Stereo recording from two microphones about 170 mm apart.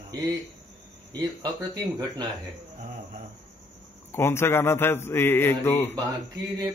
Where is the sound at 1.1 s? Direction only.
25° right (ahead or behind).